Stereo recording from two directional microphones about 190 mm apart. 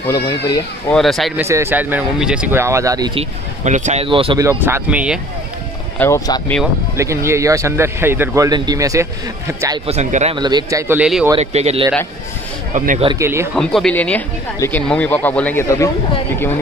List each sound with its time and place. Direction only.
0.0 s speech: 20° left (ahead or behind)
0.8 s speech: centre (ahead or behind)
1.4 s speech: 15° right (ahead or behind)
3.2 s speech: 40° right (ahead or behind)
4.5 s speech: 15° right (ahead or behind)
5.9 s speech: 15° left (ahead or behind)
7.0 s speech: 15° right (ahead or behind)
9.8 s speech: 35° right (ahead or behind)
10.4 s speech: 20° right (ahead or behind)
11.0 s speech: 5° right (ahead or behind)
11.3 s speech: 35° right (ahead or behind)
13.2 s speech: 15° right (ahead or behind)
13.6 s speech: 5° left (ahead or behind)